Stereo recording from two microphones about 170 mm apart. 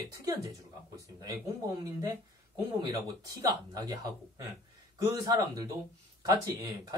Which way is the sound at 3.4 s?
20° right (ahead or behind).